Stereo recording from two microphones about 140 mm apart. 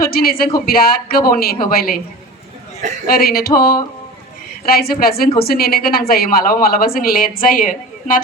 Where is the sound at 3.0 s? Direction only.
90° left.